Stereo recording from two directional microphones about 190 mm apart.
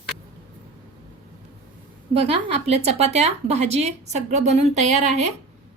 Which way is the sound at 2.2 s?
30° right (ahead or behind).